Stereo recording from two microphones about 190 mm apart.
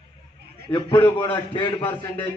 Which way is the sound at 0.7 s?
25° left (ahead or behind).